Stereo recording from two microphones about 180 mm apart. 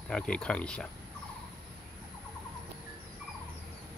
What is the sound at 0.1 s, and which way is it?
Speech, 5° left (ahead or behind).